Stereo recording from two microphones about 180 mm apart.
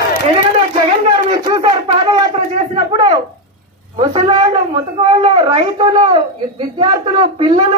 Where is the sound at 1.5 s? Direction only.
25° right (ahead or behind).